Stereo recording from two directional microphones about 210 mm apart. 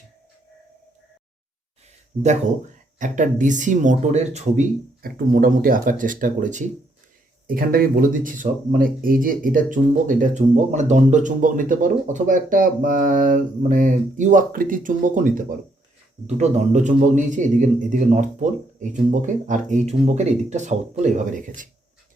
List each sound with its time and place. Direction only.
2.2 s speech: 35° right (ahead or behind)
5.0 s speech: 45° right (ahead or behind)